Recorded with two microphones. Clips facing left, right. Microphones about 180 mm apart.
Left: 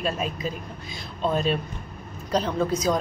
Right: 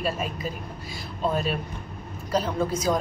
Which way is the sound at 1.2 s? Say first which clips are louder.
Left 2 dB; 5° right (ahead or behind).